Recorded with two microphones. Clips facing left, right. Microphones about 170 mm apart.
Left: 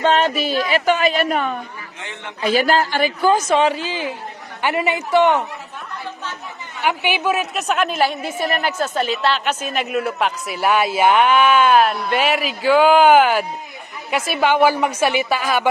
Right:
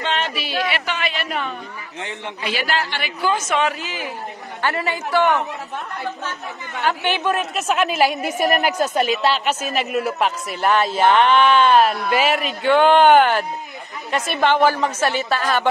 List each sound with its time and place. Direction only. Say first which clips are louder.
0.0 s a man's voice: left 7 dB; 45° left (ahead or behind)
4.6 s speech: left 3 dB; 15° left (ahead or behind)
6.8 s a woman's voice: left 1 dB; 10° left (ahead or behind)